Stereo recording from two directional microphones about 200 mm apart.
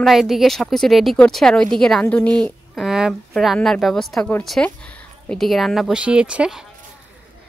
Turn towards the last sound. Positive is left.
turn(degrees=-5)  # may be behind; listen again after turning